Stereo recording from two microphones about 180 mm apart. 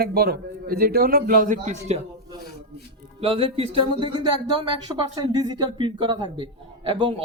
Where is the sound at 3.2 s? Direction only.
30° right (ahead or behind).